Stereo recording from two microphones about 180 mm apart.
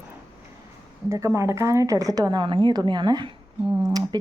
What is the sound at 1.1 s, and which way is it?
Speech, 15° right (ahead or behind).